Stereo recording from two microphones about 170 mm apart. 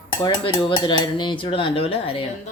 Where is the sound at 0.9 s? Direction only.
25° left (ahead or behind).